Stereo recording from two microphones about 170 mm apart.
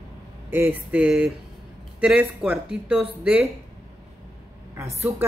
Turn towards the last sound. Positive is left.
turn(degrees=-15)  # may be behind; listen again after turning